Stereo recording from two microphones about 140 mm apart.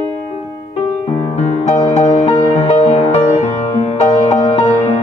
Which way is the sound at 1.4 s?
50° left (ahead or behind).